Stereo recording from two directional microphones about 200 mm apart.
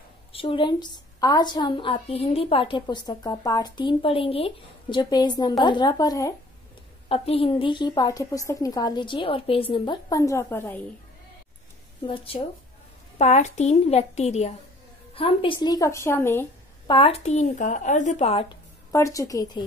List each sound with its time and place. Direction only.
0.3 s a woman's voice: 25° left (ahead or behind)
7.1 s a woman's voice: 30° left (ahead or behind); by 10.9 s 10° left (ahead or behind)
12.1 s a woman's voice: 25° left (ahead or behind)
16.8 s speech: 25° left (ahead or behind)
18.9 s a woman's voice: 15° left (ahead or behind)